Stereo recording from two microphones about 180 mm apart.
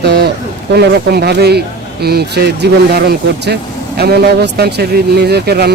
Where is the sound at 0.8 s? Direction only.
60° right (ahead or behind).